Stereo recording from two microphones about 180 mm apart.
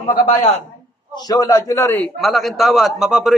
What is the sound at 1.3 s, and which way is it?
Speech, 20° left (ahead or behind).